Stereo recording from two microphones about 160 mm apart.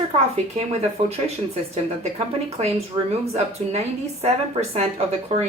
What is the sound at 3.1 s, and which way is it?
A woman's voice, 40° right (ahead or behind).